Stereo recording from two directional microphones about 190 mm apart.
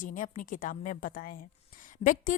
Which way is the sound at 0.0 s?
45° left (ahead or behind).